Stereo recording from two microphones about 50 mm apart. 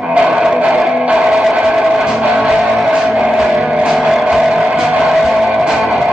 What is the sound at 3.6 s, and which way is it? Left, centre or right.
Music, centre.